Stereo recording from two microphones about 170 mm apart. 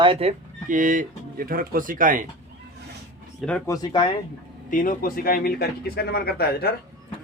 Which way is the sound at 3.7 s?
25° left (ahead or behind).